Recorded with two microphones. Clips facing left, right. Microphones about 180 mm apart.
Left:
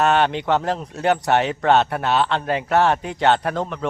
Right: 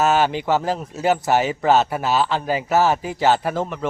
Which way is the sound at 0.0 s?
5° right (ahead or behind).